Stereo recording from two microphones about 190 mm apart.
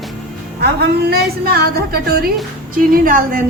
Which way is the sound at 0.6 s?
55° right (ahead or behind).